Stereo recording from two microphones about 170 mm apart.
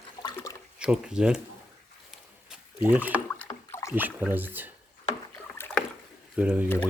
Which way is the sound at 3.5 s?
15° left (ahead or behind).